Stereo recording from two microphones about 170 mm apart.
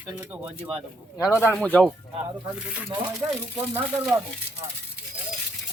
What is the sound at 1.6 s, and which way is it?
Speech, 5° left (ahead or behind).